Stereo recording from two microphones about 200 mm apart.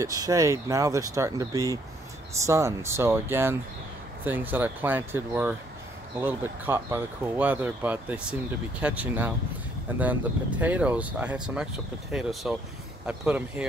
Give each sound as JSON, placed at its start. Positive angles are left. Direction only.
{"t": 0.0, "sound": "speech", "side_deg": -15}